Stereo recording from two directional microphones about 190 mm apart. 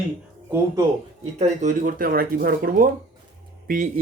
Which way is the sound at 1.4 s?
40° right (ahead or behind).